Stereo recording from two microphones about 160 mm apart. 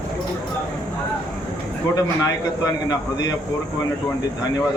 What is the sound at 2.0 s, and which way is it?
A man's voice, 20° left (ahead or behind).